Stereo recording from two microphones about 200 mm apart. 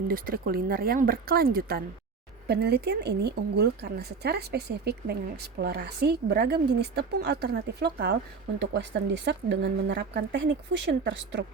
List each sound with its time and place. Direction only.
0.1 s speech: 45° right (ahead or behind); by 11.4 s 65° right (ahead or behind)